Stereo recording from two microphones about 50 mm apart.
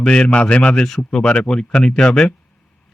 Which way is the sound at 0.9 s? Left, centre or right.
Centre.